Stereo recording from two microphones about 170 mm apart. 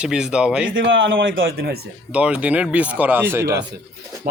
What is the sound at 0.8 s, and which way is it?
Speech, 90° right.